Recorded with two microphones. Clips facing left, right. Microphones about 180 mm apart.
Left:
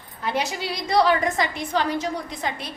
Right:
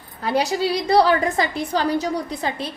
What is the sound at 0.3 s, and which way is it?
A woman's voice, 35° right (ahead or behind).